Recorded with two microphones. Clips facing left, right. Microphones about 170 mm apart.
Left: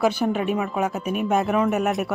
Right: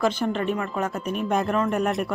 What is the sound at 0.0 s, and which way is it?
Speech, 10° left (ahead or behind).